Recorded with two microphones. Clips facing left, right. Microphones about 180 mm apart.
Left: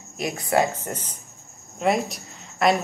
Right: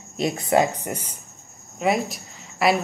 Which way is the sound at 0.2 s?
20° right (ahead or behind).